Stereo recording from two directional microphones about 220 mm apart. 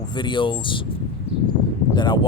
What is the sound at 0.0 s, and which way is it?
Speech, 20° left (ahead or behind).